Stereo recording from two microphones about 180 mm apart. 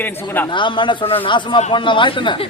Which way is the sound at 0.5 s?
25° left (ahead or behind).